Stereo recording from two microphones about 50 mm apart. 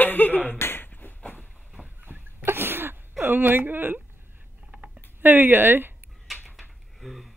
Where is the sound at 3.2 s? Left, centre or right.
Right.